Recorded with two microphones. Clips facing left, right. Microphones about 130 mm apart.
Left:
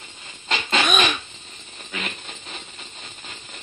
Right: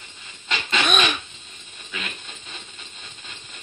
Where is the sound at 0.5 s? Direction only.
35° left (ahead or behind).